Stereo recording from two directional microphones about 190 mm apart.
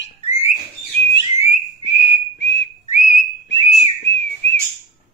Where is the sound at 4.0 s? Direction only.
75° left (ahead or behind).